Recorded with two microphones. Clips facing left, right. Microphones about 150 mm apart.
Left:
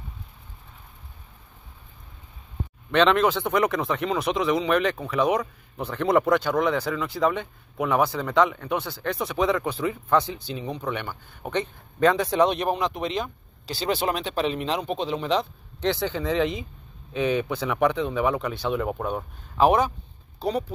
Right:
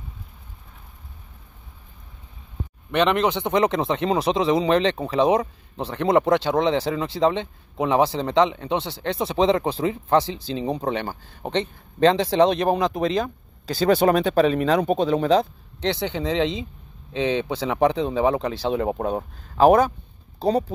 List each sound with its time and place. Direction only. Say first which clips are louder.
2.9 s speech: even; 15° right (ahead or behind)
12.6 s speech: right 5 dB; 40° right (ahead or behind)
15.9 s speech: right 1 dB; 20° right (ahead or behind); by 20.6 s 40° right (ahead or behind)